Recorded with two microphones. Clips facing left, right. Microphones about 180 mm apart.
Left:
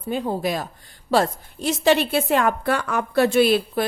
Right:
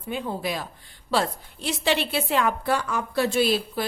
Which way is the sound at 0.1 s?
40° left (ahead or behind).